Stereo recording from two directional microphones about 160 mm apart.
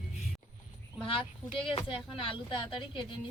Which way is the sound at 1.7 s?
35° left (ahead or behind).